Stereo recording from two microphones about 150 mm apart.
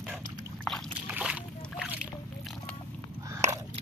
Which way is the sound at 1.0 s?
10° right (ahead or behind).